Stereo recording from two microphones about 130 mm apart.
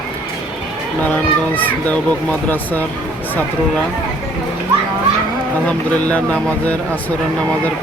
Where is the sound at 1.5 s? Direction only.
15° left (ahead or behind).